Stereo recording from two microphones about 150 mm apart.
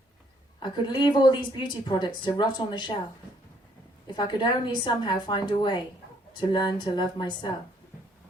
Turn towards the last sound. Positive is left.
turn(degrees=30)  # may be behind; listen again after turning